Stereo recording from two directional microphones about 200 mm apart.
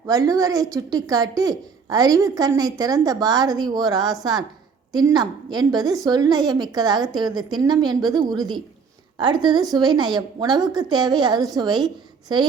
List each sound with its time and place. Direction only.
0.1 s a woman's voice: 15° right (ahead or behind)